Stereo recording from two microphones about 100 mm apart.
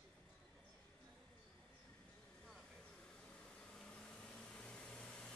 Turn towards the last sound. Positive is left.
turn(degrees=10)  # may be behind; listen again after turning